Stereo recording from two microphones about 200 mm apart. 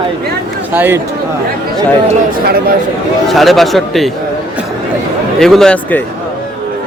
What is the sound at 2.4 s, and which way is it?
Speech, 50° right (ahead or behind).